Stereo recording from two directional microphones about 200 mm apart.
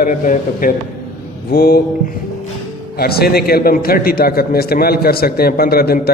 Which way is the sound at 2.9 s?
50° left (ahead or behind).